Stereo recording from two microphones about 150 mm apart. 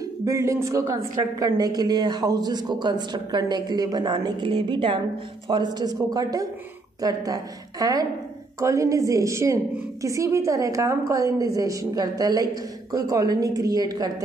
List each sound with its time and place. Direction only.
0.0 s a woman's voice: 20° right (ahead or behind)